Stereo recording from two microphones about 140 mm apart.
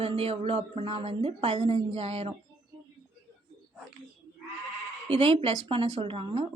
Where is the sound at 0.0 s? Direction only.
45° right (ahead or behind).